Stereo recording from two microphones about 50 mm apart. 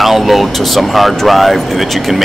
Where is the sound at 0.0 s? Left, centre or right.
Centre.